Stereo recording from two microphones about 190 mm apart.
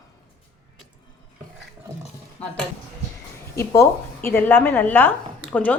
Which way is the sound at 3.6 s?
15° left (ahead or behind).